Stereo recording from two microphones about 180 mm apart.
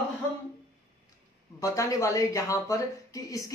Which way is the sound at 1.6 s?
20° left (ahead or behind).